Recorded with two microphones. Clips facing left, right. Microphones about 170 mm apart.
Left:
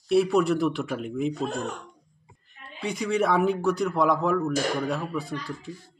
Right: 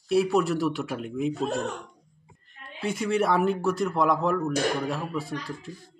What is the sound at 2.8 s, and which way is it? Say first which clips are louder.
Speech: even; centre (ahead or behind).